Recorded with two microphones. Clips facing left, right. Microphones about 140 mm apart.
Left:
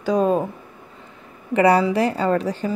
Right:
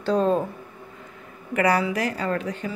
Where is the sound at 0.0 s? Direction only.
10° left (ahead or behind).